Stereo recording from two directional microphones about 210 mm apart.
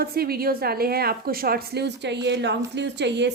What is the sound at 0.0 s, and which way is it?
A woman's voice, 45° right (ahead or behind).